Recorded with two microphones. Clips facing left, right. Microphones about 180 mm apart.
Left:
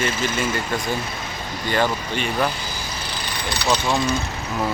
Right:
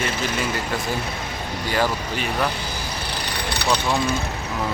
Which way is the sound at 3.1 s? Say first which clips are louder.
Even; 65° right (ahead or behind).